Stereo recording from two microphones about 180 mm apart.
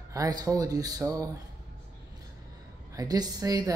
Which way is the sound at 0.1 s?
20° right (ahead or behind).